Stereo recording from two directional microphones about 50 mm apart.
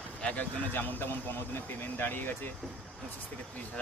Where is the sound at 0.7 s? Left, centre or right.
Left.